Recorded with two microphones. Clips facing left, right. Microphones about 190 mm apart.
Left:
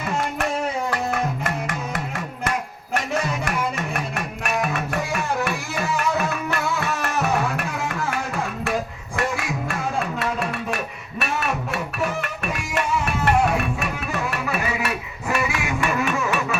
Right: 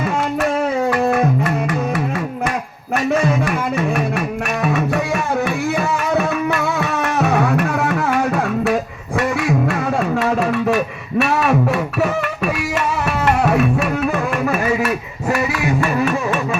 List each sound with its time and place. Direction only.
0.9 s music: 60° right (ahead or behind)
2.9 s music: 70° right (ahead or behind)
5.7 s music: 60° right (ahead or behind)
9.1 s a sound: 70° right (ahead or behind)
11.9 s music: 75° right (ahead or behind)
14.1 s music: 50° right (ahead or behind)